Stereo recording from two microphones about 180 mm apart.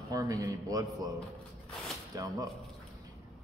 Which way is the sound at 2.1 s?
15° right (ahead or behind).